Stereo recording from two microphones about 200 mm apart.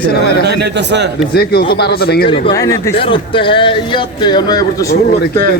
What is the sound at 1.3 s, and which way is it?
Speech, 55° left (ahead or behind).